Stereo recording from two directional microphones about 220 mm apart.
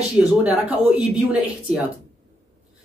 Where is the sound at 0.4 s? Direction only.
5° right (ahead or behind).